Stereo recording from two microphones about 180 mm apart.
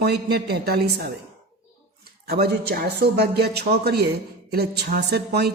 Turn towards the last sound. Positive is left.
turn(degrees=-65)  # may be behind; listen again after turning